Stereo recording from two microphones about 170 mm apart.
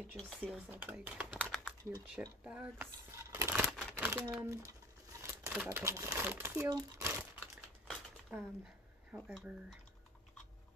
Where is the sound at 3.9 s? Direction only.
10° right (ahead or behind).